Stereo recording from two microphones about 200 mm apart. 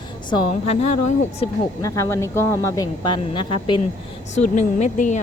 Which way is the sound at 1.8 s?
15° left (ahead or behind).